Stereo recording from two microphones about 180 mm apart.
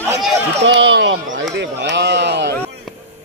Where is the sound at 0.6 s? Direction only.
90° right.